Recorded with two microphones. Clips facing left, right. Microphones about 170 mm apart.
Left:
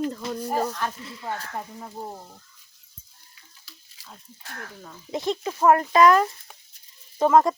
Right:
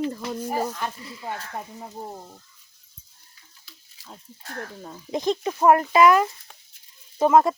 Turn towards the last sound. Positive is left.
turn(degrees=-10)  # may be behind; listen again after turning